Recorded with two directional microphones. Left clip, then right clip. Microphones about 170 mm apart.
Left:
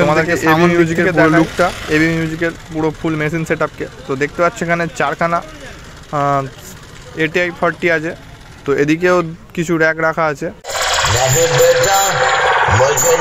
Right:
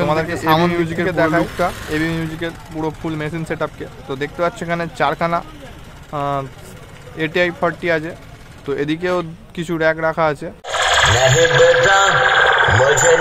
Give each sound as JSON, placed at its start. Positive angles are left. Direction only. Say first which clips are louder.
{"t": 0.0, "sound": "speech", "louder": "left 5 dB", "side_deg": 15}
{"t": 10.6, "sound": "speech", "louder": "right 2 dB", "side_deg": -5}